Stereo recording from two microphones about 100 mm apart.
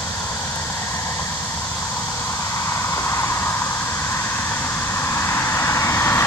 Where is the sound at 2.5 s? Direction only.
30° left (ahead or behind).